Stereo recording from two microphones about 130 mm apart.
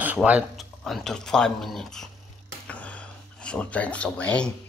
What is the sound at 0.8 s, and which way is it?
Speech, 5° left (ahead or behind).